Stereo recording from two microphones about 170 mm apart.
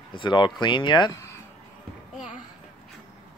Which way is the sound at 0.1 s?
30° left (ahead or behind).